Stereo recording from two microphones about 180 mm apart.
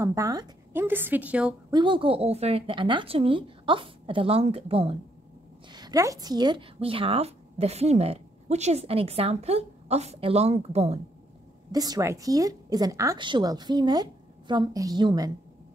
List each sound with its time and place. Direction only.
0.0 s a woman's voice: 20° right (ahead or behind)
1.7 s a woman's voice: 25° right (ahead or behind)
5.7 s speech: 25° right (ahead or behind)
11.7 s a woman's voice: 20° right (ahead or behind)